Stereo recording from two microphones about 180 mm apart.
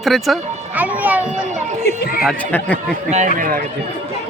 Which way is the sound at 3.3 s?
50° right (ahead or behind).